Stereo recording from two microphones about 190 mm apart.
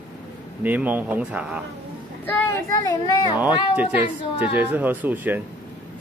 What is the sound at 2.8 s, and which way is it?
Speech, 20° left (ahead or behind).